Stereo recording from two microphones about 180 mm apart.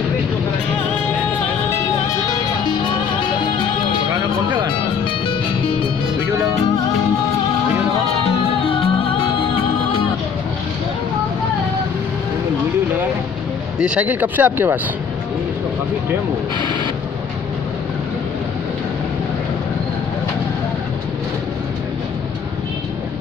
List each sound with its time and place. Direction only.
2.6 s music: 25° left (ahead or behind)
5.2 s music: 30° left (ahead or behind)
8.6 s music: 30° left (ahead or behind)
13.7 s speech: 5° right (ahead or behind)